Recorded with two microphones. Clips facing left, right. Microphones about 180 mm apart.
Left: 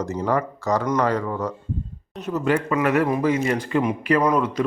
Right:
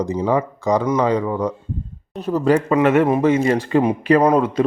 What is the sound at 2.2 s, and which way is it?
Speech, 35° right (ahead or behind).